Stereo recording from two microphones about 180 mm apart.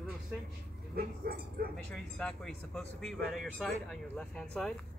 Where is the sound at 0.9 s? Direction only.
55° right (ahead or behind).